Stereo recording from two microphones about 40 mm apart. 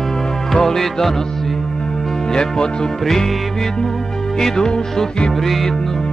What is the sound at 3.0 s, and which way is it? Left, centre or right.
Music, centre.